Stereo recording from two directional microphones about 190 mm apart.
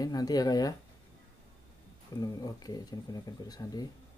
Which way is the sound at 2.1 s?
20° left (ahead or behind).